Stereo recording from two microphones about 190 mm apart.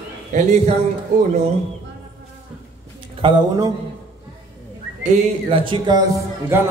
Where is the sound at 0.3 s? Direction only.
40° right (ahead or behind).